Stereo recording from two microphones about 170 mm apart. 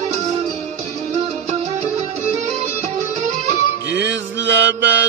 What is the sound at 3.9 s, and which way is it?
Mantra, 90° right.